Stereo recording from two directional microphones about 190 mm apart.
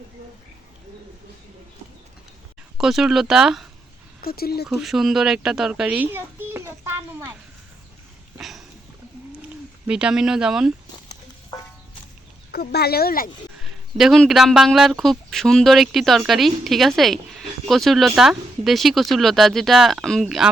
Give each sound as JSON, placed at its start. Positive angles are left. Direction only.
{"t": 2.7, "sound": "speech", "side_deg": 0}
{"t": 4.2, "sound": "speech", "side_deg": 55}
{"t": 4.7, "sound": "a child's voice", "side_deg": 0}
{"t": 8.4, "sound": "a sound", "side_deg": 0}
{"t": 9.8, "sound": "speech", "side_deg": -5}
{"t": 12.5, "sound": "speech", "side_deg": 55}
{"t": 13.6, "sound": "speech", "side_deg": 0}